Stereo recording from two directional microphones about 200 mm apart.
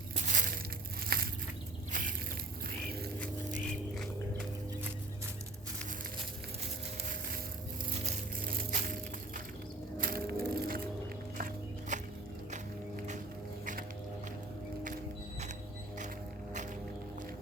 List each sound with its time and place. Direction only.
0.3 s crushing: 40° right (ahead or behind)
1.0 s a sound: 50° right (ahead or behind)
8.0 s music: 40° right (ahead or behind)
10.0 s music: 50° right (ahead or behind)
11.3 s walk: 45° right (ahead or behind)